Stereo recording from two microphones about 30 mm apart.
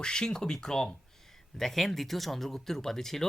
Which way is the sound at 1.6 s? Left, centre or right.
Centre.